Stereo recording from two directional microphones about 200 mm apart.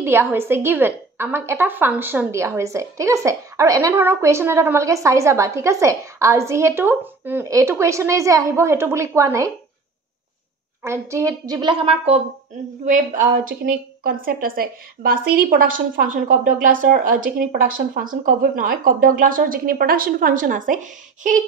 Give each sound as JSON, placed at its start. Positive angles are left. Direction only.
{"t": 0.0, "sound": "a woman's voice", "side_deg": -10}
{"t": 10.8, "sound": "a woman's voice", "side_deg": -15}
{"t": 12.8, "sound": "a woman's voice", "side_deg": -40}